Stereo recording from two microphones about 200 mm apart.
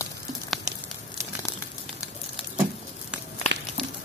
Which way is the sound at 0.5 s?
Centre (ahead or behind).